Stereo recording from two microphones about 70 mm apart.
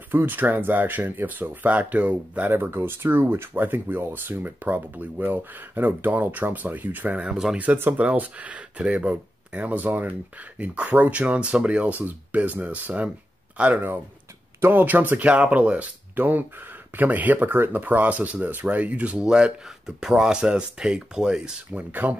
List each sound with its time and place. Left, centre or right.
0.1 s speech: right; by 21.8 s centre